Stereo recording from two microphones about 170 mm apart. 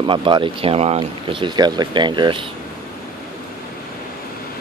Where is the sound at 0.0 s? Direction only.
30° right (ahead or behind).